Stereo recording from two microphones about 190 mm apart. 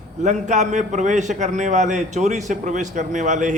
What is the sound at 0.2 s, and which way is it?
Speech, 40° right (ahead or behind).